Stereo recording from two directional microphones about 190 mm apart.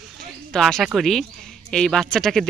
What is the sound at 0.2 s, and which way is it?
Speech, centre (ahead or behind).